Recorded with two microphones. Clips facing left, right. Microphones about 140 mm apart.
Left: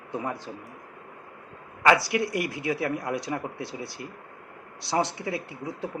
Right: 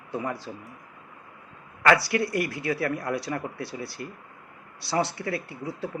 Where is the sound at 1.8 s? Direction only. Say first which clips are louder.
Even; 20° left (ahead or behind).